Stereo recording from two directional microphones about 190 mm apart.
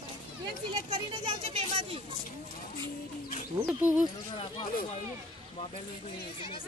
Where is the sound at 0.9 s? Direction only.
30° right (ahead or behind).